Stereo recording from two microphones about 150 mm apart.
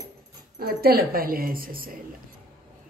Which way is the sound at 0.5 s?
90° right.